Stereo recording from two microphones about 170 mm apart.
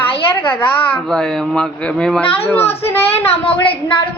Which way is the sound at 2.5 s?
15° left (ahead or behind).